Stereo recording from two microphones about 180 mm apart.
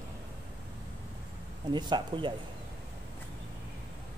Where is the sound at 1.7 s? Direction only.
25° right (ahead or behind).